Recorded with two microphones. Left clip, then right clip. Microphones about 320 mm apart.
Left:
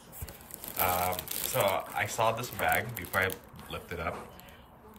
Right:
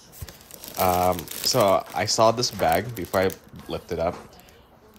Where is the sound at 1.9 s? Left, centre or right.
Centre.